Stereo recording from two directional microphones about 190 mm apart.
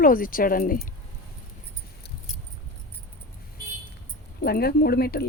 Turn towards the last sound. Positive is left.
turn(degrees=55)  # may be behind; listen again after turning